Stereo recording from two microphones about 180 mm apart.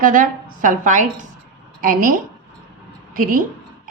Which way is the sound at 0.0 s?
50° right (ahead or behind).